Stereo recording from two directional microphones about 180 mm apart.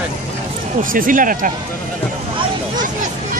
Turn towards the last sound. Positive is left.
turn(degrees=-50)  # may be behind; listen again after turning